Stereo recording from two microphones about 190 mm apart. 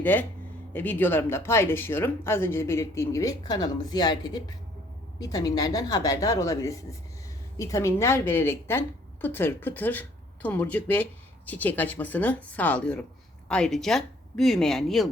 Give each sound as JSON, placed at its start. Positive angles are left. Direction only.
{"t": 0.0, "sound": "a woman's voice", "side_deg": 10}